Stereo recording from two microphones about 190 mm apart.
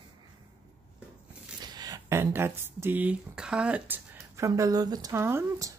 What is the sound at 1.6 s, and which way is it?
Speech, 20° right (ahead or behind).